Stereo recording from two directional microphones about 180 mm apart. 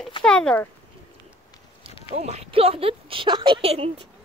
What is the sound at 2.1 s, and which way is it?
Speech, 40° right (ahead or behind).